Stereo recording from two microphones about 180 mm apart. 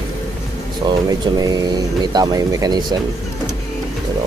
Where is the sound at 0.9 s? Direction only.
20° right (ahead or behind).